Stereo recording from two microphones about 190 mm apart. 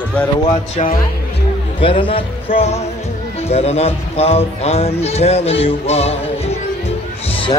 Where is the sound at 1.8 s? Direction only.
30° left (ahead or behind).